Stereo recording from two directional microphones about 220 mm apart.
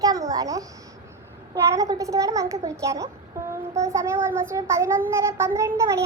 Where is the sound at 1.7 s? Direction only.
15° right (ahead or behind).